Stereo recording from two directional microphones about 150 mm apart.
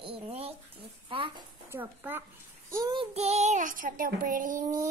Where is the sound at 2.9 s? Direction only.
40° right (ahead or behind); by 4.8 s 60° right (ahead or behind).